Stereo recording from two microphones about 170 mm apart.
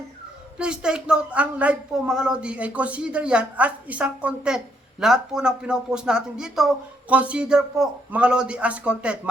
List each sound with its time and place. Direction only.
0.6 s speech: 5° right (ahead or behind)